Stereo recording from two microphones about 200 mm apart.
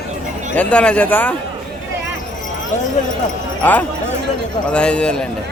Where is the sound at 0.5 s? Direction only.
5° left (ahead or behind).